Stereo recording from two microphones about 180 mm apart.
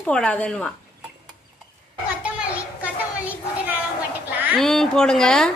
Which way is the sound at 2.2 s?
5° right (ahead or behind).